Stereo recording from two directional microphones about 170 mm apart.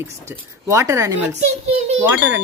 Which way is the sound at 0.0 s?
15° right (ahead or behind).